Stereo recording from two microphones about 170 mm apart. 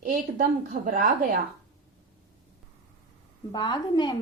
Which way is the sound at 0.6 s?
50° right (ahead or behind).